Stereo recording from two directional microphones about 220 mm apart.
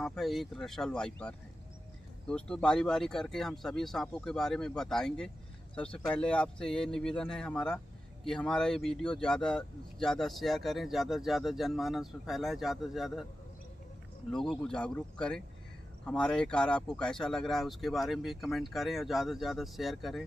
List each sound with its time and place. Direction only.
0.0 s a man's voice: centre (ahead or behind)
14.3 s a man's voice: centre (ahead or behind)